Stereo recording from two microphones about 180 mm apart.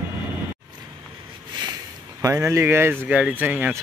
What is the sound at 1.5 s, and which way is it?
Speech, 20° right (ahead or behind).